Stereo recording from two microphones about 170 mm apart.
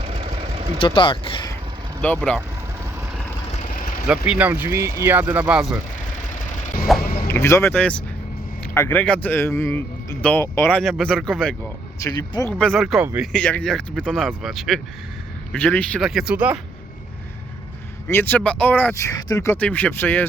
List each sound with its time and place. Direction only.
0.0 s vehicle: 40° right (ahead or behind)
0.8 s speech: 30° left (ahead or behind)
2.0 s speech: 10° left (ahead or behind)
3.7 s vehicle: 55° left (ahead or behind)
4.3 s speech: 10° right (ahead or behind)
7.0 s vehicle: 60° left (ahead or behind)
7.3 s speech: 15° left (ahead or behind)
10.8 s speech: centre (ahead or behind)
12.0 s speech: 20° left (ahead or behind)
12.5 s speech: 5° left (ahead or behind)
18.1 s speech: 10° left (ahead or behind)